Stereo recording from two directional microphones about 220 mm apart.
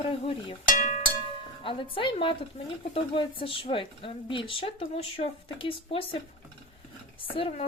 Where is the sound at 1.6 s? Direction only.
25° left (ahead or behind).